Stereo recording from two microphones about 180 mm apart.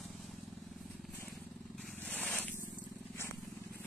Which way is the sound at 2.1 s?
10° left (ahead or behind).